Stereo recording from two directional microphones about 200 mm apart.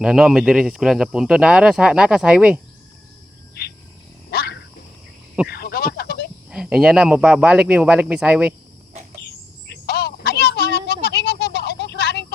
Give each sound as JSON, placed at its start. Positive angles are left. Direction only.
{"t": 0.0, "sound": "speech", "side_deg": 0}
{"t": 4.3, "sound": "wild animals", "side_deg": 55}
{"t": 5.5, "sound": "fowl", "side_deg": 50}
{"t": 6.5, "sound": "speech", "side_deg": -5}
{"t": 9.2, "sound": "cricket", "side_deg": 50}